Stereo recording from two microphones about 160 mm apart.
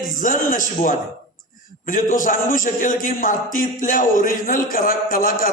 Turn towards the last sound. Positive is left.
turn(degrees=60)  # may be behind; listen again after turning